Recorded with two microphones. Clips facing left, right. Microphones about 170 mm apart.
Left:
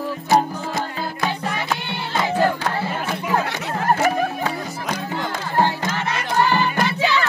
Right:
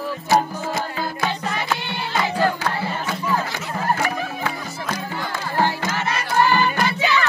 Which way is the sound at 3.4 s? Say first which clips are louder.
Left 2 dB; 65° left (ahead or behind).